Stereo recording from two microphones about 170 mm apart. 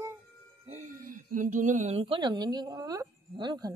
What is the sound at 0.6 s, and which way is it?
A woman's voice, 45° right (ahead or behind).